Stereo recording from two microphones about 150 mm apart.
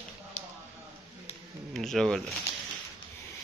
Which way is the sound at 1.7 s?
5° left (ahead or behind).